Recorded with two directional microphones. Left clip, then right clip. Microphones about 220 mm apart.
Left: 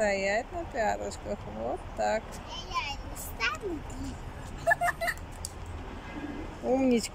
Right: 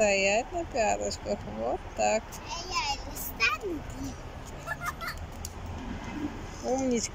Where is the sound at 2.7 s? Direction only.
20° right (ahead or behind).